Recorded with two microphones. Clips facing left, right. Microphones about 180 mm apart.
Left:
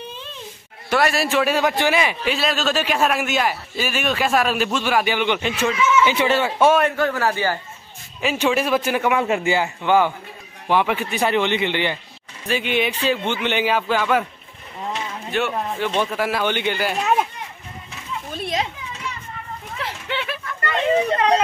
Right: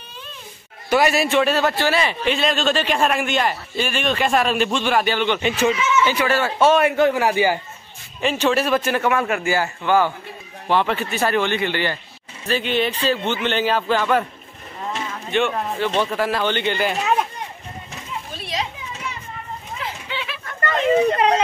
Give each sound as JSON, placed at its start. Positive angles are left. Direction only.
{"t": 0.8, "sound": "a man's voice", "side_deg": 0}
{"t": 5.4, "sound": "a man's voice", "side_deg": 0}
{"t": 6.0, "sound": "a man's voice", "side_deg": 20}
{"t": 6.8, "sound": "a man's voice", "side_deg": -15}
{"t": 8.2, "sound": "a man's voice", "side_deg": 10}
{"t": 15.3, "sound": "a man's voice", "side_deg": 5}
{"t": 18.3, "sound": "children playing", "side_deg": 50}
{"t": 19.8, "sound": "a sound", "side_deg": 70}